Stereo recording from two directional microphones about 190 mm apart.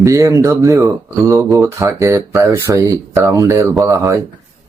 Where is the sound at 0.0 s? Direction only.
15° right (ahead or behind).